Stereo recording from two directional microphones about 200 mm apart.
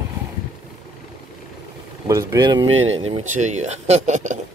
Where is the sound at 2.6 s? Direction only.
80° right.